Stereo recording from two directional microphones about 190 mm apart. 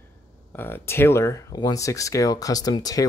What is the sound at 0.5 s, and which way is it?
Speech, 10° left (ahead or behind).